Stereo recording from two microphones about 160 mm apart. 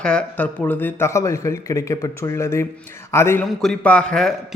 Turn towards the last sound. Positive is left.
turn(degrees=5)  # may be behind; listen again after turning